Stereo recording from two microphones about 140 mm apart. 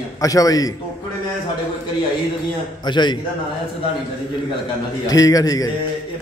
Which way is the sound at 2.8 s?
35° left (ahead or behind).